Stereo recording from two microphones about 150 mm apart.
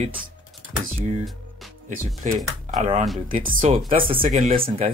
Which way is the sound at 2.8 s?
55° right (ahead or behind).